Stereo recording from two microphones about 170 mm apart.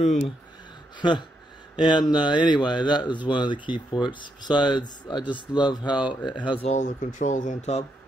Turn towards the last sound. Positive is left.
turn(degrees=40)  # may be behind; listen again after turning